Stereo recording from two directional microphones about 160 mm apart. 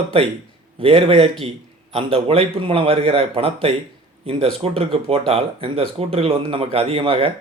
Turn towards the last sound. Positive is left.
turn(degrees=-35)  # may be behind; listen again after turning